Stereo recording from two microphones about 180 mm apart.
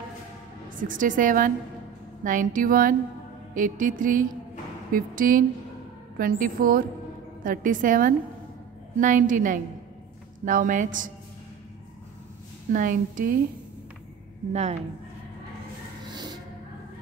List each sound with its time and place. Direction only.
0.7 s mantra: 50° right (ahead or behind)
12.7 s mantra: 45° right (ahead or behind)
14.5 s a woman's voice: 40° right (ahead or behind)
16.1 s music: 25° right (ahead or behind)